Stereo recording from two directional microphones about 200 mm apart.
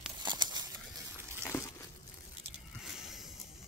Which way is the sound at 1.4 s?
15° left (ahead or behind).